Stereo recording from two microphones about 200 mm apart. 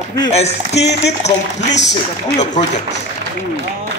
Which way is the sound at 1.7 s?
60° left (ahead or behind).